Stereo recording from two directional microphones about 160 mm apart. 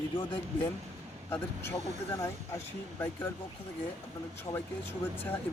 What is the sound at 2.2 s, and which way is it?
Speech, 15° left (ahead or behind).